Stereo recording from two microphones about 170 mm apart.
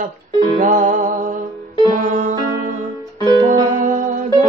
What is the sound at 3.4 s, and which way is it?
Music, 50° right (ahead or behind).